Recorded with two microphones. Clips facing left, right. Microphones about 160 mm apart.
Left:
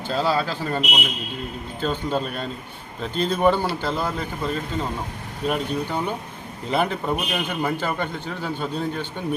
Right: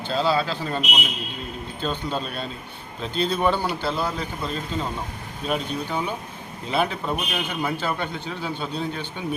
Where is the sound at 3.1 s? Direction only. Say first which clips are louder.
Even; 10° right (ahead or behind).